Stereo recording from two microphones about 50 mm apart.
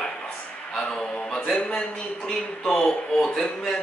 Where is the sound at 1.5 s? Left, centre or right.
Left; by 3.7 s centre.